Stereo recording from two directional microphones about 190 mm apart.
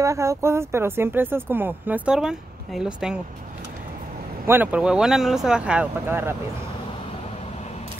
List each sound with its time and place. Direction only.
0.0 s speech: 15° right (ahead or behind)
4.5 s speech: 10° right (ahead or behind)